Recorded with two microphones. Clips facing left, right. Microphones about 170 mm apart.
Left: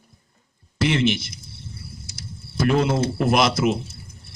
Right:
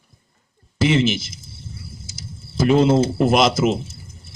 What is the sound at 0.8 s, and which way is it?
Speech, centre (ahead or behind).